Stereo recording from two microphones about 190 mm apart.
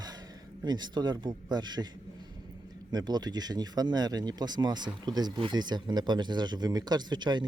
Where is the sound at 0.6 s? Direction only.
20° right (ahead or behind).